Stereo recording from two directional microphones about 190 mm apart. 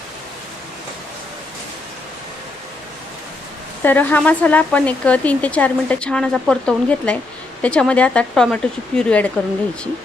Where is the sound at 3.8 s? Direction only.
10° left (ahead or behind).